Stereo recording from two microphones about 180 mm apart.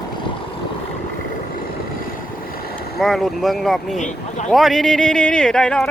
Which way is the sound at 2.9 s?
Centre (ahead or behind).